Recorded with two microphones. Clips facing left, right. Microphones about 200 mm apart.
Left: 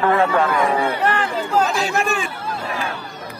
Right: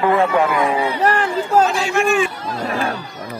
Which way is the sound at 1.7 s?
35° left (ahead or behind).